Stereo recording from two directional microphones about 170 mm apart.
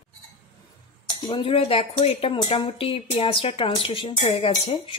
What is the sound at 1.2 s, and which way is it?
Speech, 30° left (ahead or behind).